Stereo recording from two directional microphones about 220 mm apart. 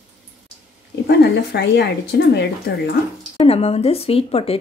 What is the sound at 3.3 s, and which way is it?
A woman's voice, 25° left (ahead or behind).